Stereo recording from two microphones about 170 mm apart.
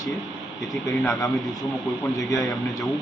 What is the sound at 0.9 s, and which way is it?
A man's voice, 20° left (ahead or behind).